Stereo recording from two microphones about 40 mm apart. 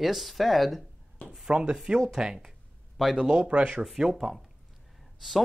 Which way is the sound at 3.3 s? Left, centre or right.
Right.